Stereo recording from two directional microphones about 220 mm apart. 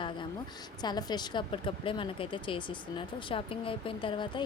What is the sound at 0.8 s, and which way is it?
Speech, 20° left (ahead or behind).